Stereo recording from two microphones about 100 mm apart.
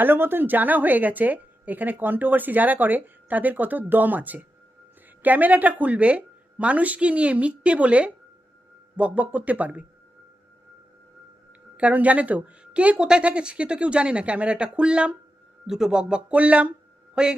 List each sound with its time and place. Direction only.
0.0 s a woman's voice: 20° right (ahead or behind)
11.8 s a woman's voice: 15° right (ahead or behind)